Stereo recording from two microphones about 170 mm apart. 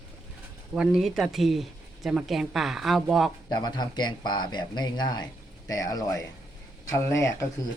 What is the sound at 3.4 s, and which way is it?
Speech, 25° left (ahead or behind).